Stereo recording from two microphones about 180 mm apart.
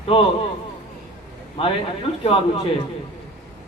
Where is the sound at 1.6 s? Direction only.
30° left (ahead or behind).